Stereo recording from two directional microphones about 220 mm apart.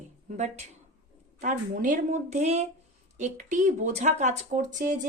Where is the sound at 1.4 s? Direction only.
35° right (ahead or behind).